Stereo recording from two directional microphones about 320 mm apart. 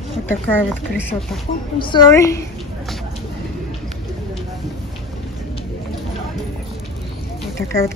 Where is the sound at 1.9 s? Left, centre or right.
Centre.